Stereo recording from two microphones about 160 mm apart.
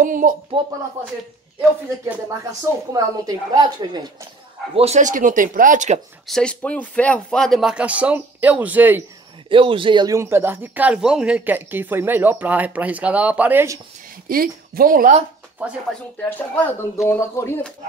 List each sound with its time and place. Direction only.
0.0 s speech: 55° right (ahead or behind)
2.9 s a woman's voice: 25° right (ahead or behind)
4.7 s speech: 45° right (ahead or behind)
6.2 s speech: 5° left (ahead or behind); by 9.0 s 10° right (ahead or behind)
9.5 s speech: 35° right (ahead or behind); by 13.7 s 15° right (ahead or behind)
14.2 s speech: 65° right (ahead or behind)
16.2 s speech: 10° left (ahead or behind)